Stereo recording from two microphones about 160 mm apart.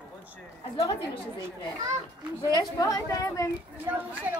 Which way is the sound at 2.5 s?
20° left (ahead or behind).